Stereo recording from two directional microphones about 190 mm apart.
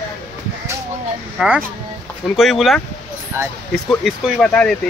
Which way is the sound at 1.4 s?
5° right (ahead or behind).